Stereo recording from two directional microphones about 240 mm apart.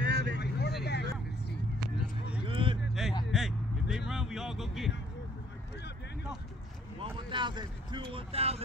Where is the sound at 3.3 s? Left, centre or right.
Centre.